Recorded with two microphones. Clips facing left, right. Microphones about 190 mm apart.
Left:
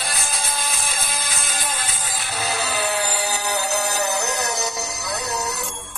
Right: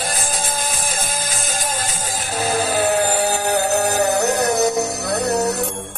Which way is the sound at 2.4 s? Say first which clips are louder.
Right 7 dB; 50° right (ahead or behind).